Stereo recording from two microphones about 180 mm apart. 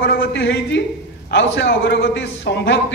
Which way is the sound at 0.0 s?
60° left (ahead or behind).